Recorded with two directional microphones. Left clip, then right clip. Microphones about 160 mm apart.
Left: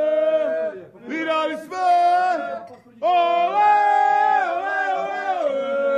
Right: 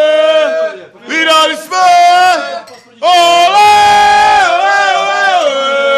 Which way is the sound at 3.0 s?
25° right (ahead or behind).